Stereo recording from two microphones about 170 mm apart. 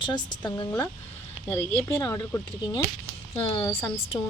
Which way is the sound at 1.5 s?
10° left (ahead or behind).